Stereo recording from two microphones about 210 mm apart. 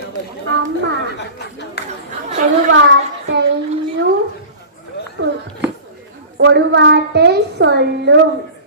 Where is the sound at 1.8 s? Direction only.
50° left (ahead or behind).